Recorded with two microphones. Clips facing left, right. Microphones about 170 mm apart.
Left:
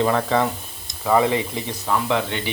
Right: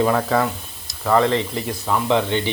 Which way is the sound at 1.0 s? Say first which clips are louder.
Right 1 dB; 10° left (ahead or behind).